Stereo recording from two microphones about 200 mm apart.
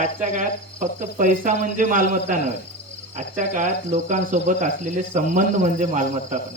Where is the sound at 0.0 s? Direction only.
40° right (ahead or behind).